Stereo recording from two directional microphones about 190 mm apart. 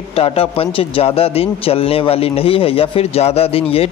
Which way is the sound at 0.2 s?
30° left (ahead or behind).